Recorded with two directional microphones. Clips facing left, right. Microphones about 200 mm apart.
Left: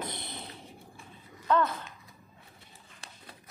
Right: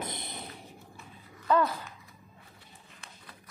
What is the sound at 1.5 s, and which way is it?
Speech, 5° right (ahead or behind).